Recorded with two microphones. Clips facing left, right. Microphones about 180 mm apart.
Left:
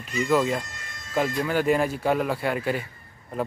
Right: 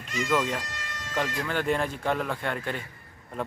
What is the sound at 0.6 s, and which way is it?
Bagpipes, 90° right.